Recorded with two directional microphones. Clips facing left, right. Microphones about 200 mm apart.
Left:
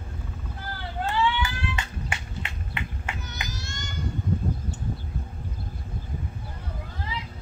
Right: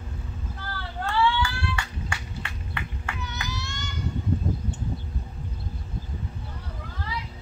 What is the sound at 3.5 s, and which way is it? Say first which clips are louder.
Child singing: right 2 dB; 45° left (ahead or behind).